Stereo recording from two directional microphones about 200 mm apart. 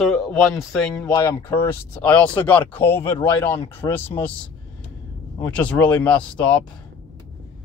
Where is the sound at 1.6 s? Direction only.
10° left (ahead or behind).